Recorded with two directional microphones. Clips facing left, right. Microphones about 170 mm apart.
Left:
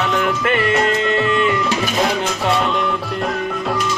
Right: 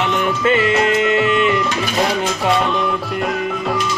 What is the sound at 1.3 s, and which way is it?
Music, 20° right (ahead or behind).